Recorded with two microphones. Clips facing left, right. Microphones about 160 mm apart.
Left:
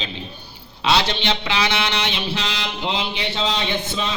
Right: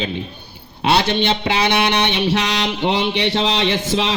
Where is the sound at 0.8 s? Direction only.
55° right (ahead or behind).